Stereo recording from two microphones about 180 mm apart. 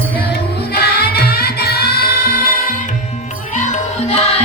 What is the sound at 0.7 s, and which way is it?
Music, 60° left (ahead or behind).